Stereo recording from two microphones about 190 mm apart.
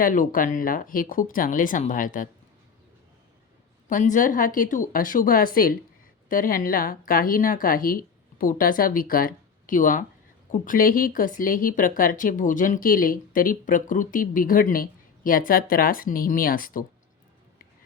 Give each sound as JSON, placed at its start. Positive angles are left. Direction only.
{"t": 0.0, "sound": "speech", "side_deg": 45}
{"t": 3.8, "sound": "speech", "side_deg": 45}